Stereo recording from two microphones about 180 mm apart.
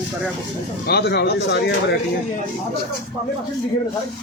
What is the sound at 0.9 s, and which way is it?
Speech, 65° left (ahead or behind).